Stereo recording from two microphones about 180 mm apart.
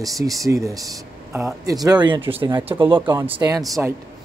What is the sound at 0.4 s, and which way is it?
Speech, 15° right (ahead or behind).